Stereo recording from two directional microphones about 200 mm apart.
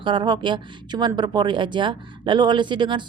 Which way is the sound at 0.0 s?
25° right (ahead or behind).